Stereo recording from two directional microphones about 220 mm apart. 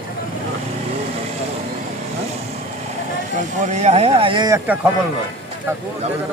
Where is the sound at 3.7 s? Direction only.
30° right (ahead or behind); by 4.8 s 15° right (ahead or behind).